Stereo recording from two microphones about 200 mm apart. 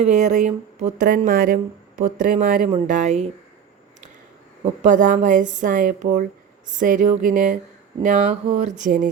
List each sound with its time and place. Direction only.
0.0 s speech: 35° right (ahead or behind)
4.6 s speech: 40° right (ahead or behind)